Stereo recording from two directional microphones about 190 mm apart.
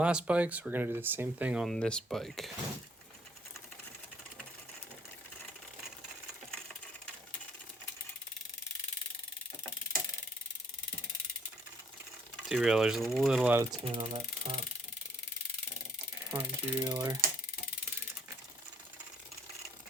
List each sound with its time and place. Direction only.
0.0 s speech: 5° right (ahead or behind)
12.5 s speech: 5° right (ahead or behind)
13.8 s speech: 30° right (ahead or behind)
16.3 s speech: 10° right (ahead or behind)
16.8 s mechanisms: 20° right (ahead or behind)